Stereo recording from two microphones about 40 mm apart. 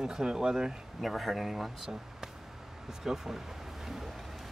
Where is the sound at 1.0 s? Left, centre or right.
Centre.